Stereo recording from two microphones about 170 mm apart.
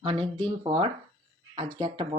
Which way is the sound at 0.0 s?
35° right (ahead or behind).